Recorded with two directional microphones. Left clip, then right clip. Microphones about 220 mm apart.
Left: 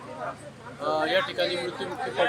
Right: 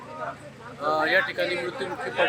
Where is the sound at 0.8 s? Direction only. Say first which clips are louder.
Right 2 dB; 5° right (ahead or behind).